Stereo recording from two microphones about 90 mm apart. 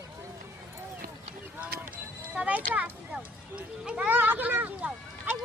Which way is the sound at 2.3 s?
15° right (ahead or behind).